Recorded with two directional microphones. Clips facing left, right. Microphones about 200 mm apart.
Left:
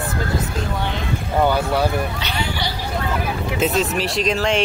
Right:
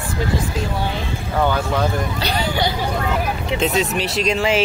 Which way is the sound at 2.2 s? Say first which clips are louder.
Right 5 dB; 40° right (ahead or behind).